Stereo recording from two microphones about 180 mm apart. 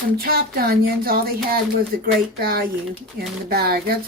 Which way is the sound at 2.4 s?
60° right (ahead or behind).